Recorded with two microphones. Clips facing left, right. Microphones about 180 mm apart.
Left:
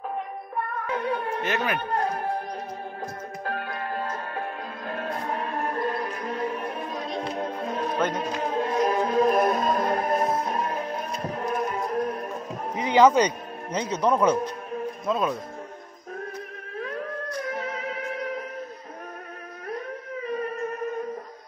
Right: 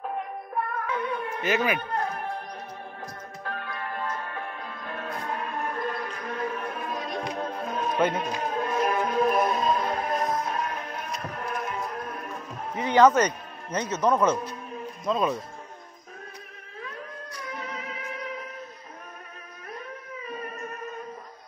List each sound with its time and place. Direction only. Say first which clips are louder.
0.9 s speech: left 5 dB; 35° left (ahead or behind)
1.4 s a man's voice: right 6 dB; centre (ahead or behind)
2.0 s speech: left 3 dB; 35° left (ahead or behind)
3.4 s music: left 3 dB; 35° left (ahead or behind)
9.5 s music: left 2 dB; 45° left (ahead or behind)
10.5 s music: left 3 dB; 30° left (ahead or behind)
12.7 s a man's voice: left 1 dB; 10° left (ahead or behind)